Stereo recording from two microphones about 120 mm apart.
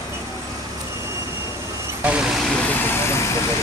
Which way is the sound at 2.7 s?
20° left (ahead or behind).